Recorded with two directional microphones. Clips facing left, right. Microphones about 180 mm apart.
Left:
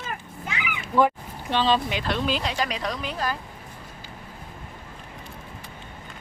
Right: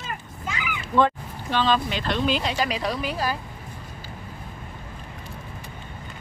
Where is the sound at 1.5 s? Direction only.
25° left (ahead or behind).